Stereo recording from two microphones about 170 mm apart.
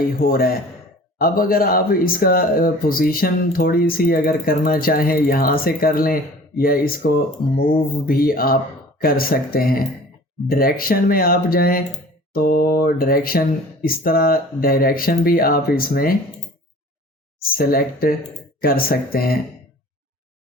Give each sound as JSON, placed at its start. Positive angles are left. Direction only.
{"t": 0.2, "sound": "speech", "side_deg": 60}
{"t": 17.4, "sound": "speech", "side_deg": 60}